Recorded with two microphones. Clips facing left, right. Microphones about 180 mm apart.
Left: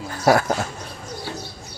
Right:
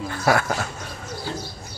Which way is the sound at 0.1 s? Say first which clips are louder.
Left 4 dB; 40° left (ahead or behind).